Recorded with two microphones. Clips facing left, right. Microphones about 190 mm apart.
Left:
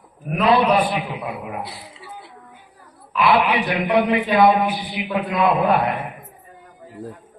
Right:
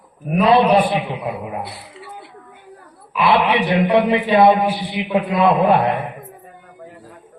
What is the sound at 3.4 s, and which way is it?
A man's voice, 30° right (ahead or behind).